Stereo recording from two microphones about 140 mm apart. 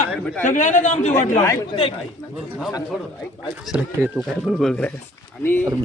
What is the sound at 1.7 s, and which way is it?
Speech, 40° left (ahead or behind).